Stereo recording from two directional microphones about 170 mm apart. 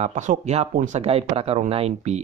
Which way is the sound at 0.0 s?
45° right (ahead or behind).